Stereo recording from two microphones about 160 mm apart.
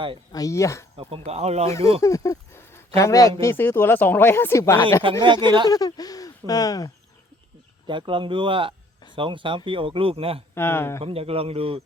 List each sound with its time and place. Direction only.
0.3 s speech: 20° left (ahead or behind)
1.2 s speech: 40° right (ahead or behind)
2.0 s a sound: 20° left (ahead or behind)
3.4 s speech: 15° left (ahead or behind)
5.2 s speech: 30° right (ahead or behind)
5.6 s speech: 25° left (ahead or behind)
7.9 s speech: 30° right (ahead or behind)
10.5 s speech: 15° left (ahead or behind)
11.0 s speech: 35° right (ahead or behind)